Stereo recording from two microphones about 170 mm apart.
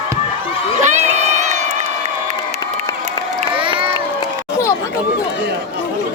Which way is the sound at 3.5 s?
30° right (ahead or behind).